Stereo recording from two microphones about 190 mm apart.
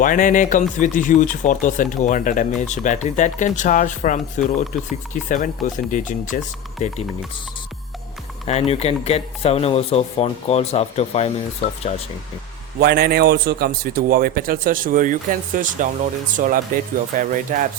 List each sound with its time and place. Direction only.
0.0 s speech: 45° left (ahead or behind)
8.4 s speech: 35° left (ahead or behind)
12.8 s a man's voice: 55° right (ahead or behind)